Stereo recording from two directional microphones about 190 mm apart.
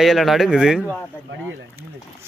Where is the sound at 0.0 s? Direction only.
Centre (ahead or behind).